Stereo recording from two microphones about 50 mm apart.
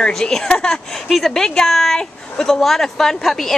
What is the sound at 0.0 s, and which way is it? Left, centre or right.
A woman's voice, centre.